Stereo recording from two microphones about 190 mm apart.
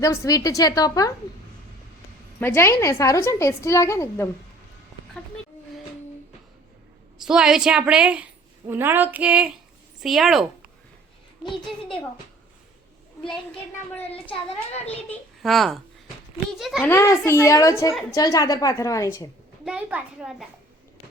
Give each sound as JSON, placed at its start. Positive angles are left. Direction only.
{"t": 0.0, "sound": "a woman's voice", "side_deg": 15}
{"t": 2.4, "sound": "a woman's voice", "side_deg": 10}
{"t": 7.2, "sound": "a woman's voice", "side_deg": -5}
{"t": 14.8, "sound": "a child's voice", "side_deg": 5}
{"t": 16.8, "sound": "a woman's voice", "side_deg": 15}
{"t": 19.6, "sound": "a child's voice", "side_deg": -5}